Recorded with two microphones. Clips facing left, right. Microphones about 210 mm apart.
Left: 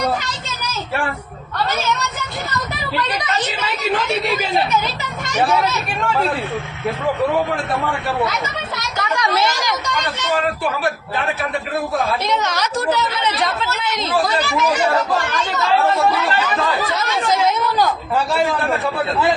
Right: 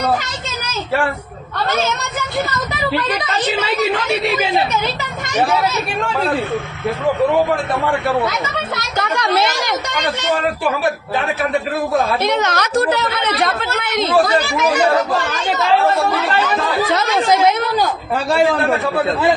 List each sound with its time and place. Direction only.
9.0 s a woman's voice: 55° right (ahead or behind)
12.2 s a woman's voice: 60° right (ahead or behind)
16.9 s speech: 70° right (ahead or behind)